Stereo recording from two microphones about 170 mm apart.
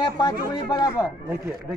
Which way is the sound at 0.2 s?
25° left (ahead or behind).